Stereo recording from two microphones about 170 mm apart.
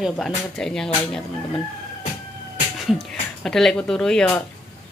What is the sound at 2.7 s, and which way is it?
Speech, centre (ahead or behind).